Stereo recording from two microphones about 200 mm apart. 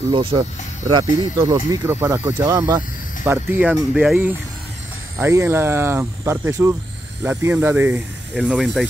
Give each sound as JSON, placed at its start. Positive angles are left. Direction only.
{"t": 0.1, "sound": "speech", "side_deg": -25}
{"t": 8.5, "sound": "speech", "side_deg": 0}